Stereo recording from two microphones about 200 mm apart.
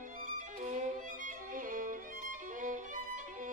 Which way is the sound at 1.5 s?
45° right (ahead or behind).